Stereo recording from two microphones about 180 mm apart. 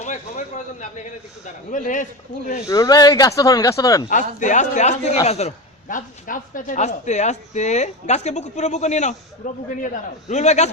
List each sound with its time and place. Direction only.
0.0 s a sound: 40° left (ahead or behind)
1.7 s a man's voice: 45° left (ahead or behind)
2.6 s speech: 20° left (ahead or behind)
4.1 s a man's voice: 45° left (ahead or behind)